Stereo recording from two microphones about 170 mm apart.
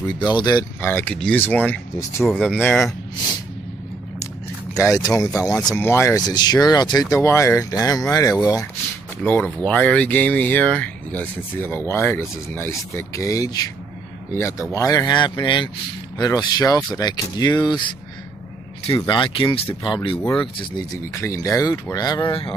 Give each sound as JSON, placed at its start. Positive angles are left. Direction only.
{"t": 0.4, "sound": "speech", "side_deg": 20}
{"t": 0.8, "sound": "speech", "side_deg": 10}
{"t": 2.2, "sound": "speech", "side_deg": 0}
{"t": 4.7, "sound": "speech", "side_deg": 20}
{"t": 19.0, "sound": "speech", "side_deg": 30}